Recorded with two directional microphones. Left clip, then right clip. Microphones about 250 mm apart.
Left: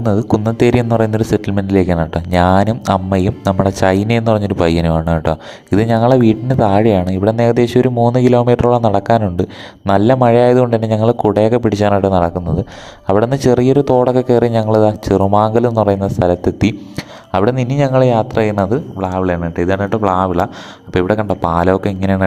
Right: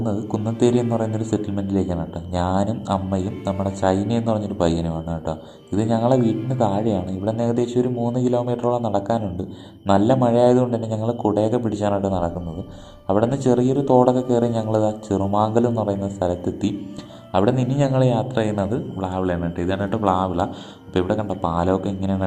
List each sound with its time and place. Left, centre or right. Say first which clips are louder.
0.3 s speech: left 5 dB; left